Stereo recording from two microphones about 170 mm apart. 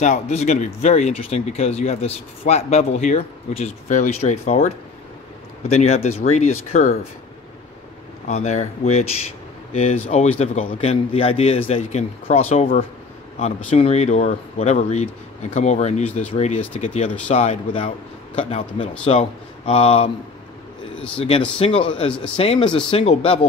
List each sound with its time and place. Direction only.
0.0 s speech: 45° left (ahead or behind)
8.3 s speech: 40° left (ahead or behind)
10.7 s speech: 35° left (ahead or behind)
16.1 s speech: 10° left (ahead or behind)
16.3 s speech: 40° left (ahead or behind)
21.5 s speech: 35° left (ahead or behind)